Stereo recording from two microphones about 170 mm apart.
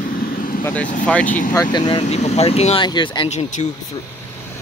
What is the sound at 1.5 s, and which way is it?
Speech, 25° left (ahead or behind).